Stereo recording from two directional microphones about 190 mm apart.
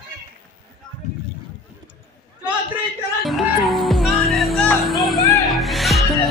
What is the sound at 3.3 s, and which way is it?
Music, centre (ahead or behind).